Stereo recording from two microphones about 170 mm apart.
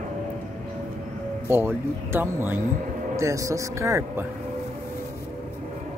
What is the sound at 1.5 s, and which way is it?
Speech, 15° right (ahead or behind).